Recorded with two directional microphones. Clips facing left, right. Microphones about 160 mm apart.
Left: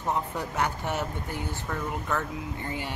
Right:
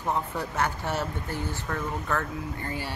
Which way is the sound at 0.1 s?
15° left (ahead or behind).